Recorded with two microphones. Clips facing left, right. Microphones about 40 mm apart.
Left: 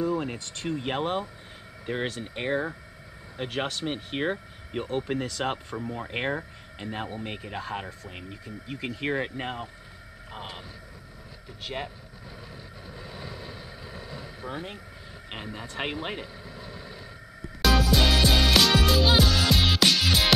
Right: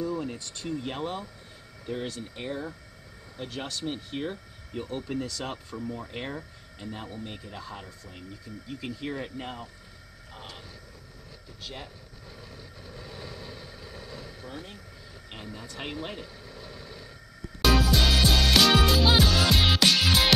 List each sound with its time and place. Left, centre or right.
0.0 s speech: left
11.6 s speech: left
12.8 s vehicle: centre
14.5 s speech: left
16.4 s vehicle: centre
17.9 s music: centre